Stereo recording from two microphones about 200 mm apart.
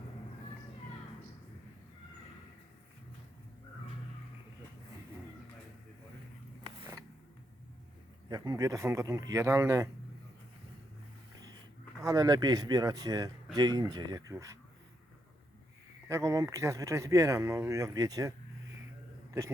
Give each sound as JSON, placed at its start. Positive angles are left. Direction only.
{"t": 8.3, "sound": "speech", "side_deg": -20}
{"t": 12.0, "sound": "speech", "side_deg": -20}
{"t": 16.0, "sound": "a man's voice", "side_deg": -15}